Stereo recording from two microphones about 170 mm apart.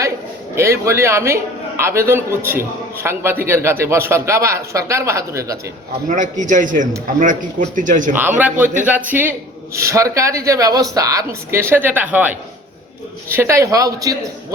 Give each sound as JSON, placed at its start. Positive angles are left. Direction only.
{"t": 0.5, "sound": "a man's voice", "side_deg": -15}
{"t": 6.1, "sound": "a man's voice", "side_deg": -50}
{"t": 8.4, "sound": "a man's voice", "side_deg": -10}